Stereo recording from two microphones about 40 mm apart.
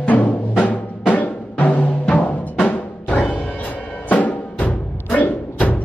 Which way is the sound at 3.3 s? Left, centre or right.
Left.